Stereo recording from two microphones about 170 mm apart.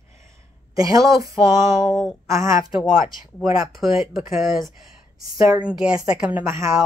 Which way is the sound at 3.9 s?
20° right (ahead or behind).